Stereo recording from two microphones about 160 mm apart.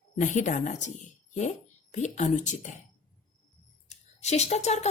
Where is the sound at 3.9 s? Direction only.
45° left (ahead or behind).